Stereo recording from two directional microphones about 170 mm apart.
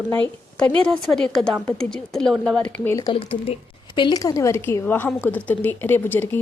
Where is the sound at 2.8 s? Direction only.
20° left (ahead or behind).